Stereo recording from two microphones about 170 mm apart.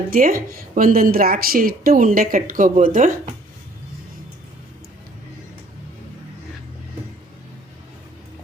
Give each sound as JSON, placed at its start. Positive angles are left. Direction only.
{"t": 0.1, "sound": "a woman's voice", "side_deg": -55}